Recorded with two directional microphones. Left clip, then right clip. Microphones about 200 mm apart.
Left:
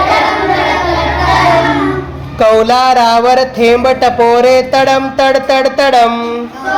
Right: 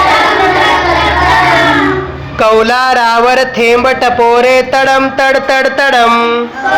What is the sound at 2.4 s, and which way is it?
Speech, 5° right (ahead or behind).